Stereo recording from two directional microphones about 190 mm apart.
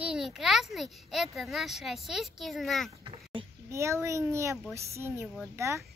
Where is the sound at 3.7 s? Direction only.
15° right (ahead or behind).